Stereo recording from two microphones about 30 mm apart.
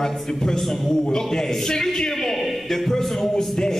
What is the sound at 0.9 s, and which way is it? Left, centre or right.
A man's voice, left.